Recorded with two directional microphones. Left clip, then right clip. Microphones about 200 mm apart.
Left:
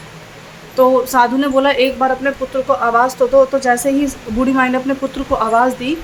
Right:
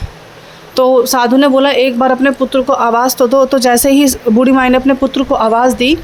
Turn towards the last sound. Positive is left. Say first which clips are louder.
# right 4 dB
turn(degrees=-40)  # may be behind; listen again after turning